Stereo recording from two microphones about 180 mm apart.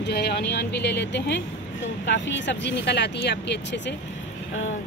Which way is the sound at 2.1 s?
80° left.